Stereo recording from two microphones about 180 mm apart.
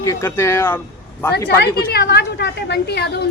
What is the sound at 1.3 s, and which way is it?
A woman's voice, 60° left (ahead or behind).